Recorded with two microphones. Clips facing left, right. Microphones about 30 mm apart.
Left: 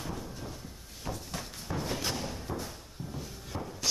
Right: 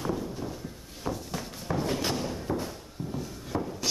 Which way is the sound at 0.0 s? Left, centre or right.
Centre.